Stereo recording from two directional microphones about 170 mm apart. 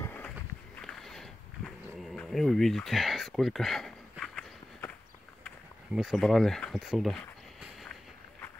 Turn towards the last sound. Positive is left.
turn(degrees=0)  # may be behind; listen again after turning